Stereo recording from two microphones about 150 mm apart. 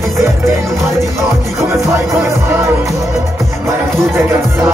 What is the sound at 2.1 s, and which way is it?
Music, 20° right (ahead or behind).